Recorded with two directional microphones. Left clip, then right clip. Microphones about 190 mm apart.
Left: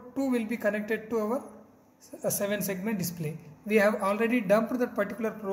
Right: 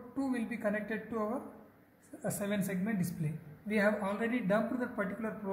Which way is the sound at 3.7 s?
50° left (ahead or behind).